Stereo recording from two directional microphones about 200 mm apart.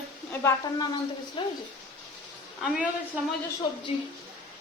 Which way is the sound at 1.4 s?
25° left (ahead or behind).